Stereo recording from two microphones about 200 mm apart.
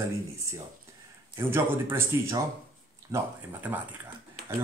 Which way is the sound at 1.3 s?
10° right (ahead or behind).